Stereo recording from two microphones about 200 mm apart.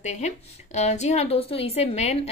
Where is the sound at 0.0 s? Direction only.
35° left (ahead or behind).